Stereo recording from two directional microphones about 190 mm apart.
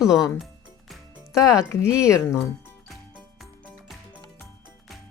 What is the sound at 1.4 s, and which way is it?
Speech, 15° left (ahead or behind).